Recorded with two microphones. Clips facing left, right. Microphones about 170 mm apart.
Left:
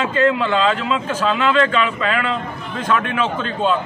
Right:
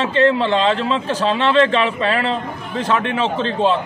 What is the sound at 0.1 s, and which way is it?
A man's voice, 30° right (ahead or behind).